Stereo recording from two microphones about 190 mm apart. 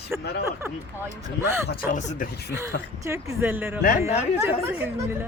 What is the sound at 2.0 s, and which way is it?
Speech, 40° left (ahead or behind).